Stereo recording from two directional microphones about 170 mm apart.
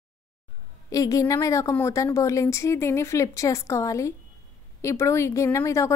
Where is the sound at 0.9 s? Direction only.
20° left (ahead or behind).